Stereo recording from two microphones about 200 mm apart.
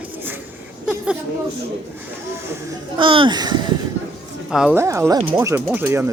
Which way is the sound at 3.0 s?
25° right (ahead or behind).